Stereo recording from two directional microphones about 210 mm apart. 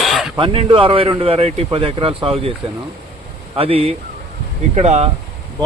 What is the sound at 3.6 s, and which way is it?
Speech, 25° right (ahead or behind).